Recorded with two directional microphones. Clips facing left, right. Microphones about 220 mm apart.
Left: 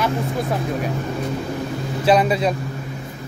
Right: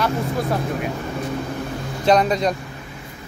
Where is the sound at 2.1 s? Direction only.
5° left (ahead or behind).